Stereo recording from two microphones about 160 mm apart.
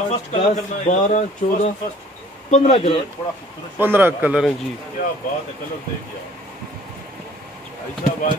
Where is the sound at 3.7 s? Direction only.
10° right (ahead or behind).